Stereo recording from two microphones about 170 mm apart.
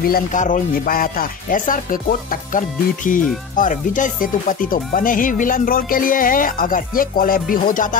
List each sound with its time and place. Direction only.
0.1 s speech: 50° left (ahead or behind)